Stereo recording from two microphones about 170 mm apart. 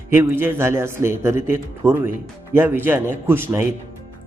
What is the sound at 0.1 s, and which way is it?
A man's voice, 15° right (ahead or behind).